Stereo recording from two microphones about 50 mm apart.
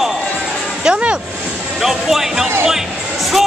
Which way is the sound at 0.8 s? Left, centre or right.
Centre.